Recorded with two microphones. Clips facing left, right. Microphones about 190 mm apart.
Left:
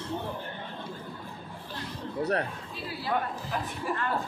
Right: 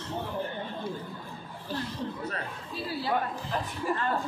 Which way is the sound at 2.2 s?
70° left (ahead or behind).